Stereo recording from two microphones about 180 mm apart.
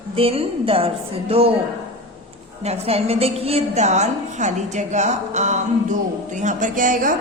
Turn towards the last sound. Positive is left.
turn(degrees=-50)  # may be behind; listen again after turning